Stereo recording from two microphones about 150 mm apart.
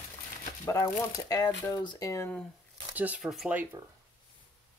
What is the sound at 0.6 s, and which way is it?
Speech, 20° left (ahead or behind).